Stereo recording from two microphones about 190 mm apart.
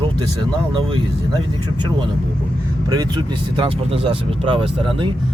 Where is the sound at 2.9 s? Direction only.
20° right (ahead or behind).